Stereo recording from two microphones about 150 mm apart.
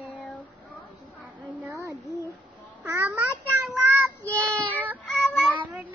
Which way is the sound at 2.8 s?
15° right (ahead or behind).